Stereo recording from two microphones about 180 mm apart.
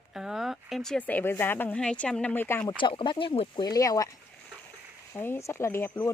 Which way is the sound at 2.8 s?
25° left (ahead or behind).